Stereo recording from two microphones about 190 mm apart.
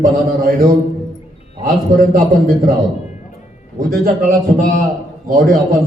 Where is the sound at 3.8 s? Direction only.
45° right (ahead or behind).